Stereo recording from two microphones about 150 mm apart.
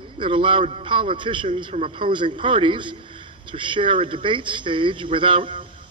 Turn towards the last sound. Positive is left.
turn(degrees=-35)  # may be behind; listen again after turning